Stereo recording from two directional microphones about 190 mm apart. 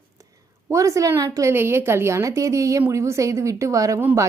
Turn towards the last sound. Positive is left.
turn(degrees=-15)  # may be behind; listen again after turning